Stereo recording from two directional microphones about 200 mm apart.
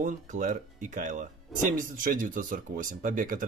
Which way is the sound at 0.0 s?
40° right (ahead or behind).